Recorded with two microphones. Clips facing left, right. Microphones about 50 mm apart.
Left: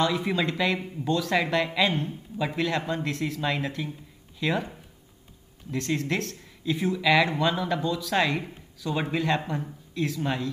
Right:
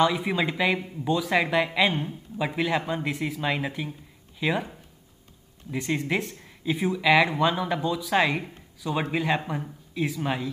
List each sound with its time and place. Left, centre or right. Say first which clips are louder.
0.0 s speech: right 2 dB; centre